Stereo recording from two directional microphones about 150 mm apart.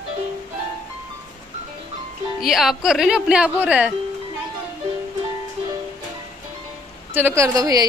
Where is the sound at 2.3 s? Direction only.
Centre (ahead or behind).